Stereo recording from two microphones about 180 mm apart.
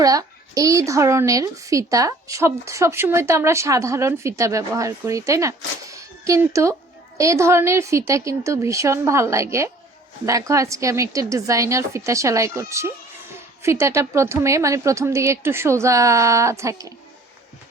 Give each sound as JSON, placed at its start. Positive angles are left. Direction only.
{"t": 0.0, "sound": "a woman's voice", "side_deg": -20}